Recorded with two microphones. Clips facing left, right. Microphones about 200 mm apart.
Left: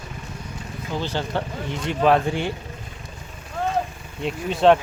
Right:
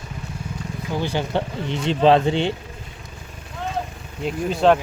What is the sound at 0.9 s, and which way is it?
Speech, 15° right (ahead or behind).